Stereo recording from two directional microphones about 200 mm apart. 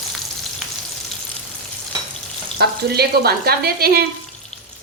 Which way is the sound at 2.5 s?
50° right (ahead or behind).